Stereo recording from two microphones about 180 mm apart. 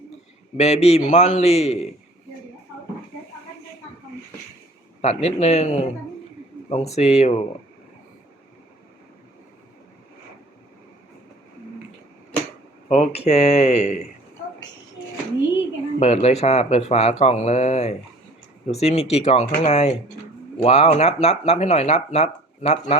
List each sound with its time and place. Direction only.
0.5 s speech: 35° left (ahead or behind)
5.0 s speech: 35° left (ahead or behind)
12.9 s speech: 35° left (ahead or behind)
16.0 s speech: 35° left (ahead or behind)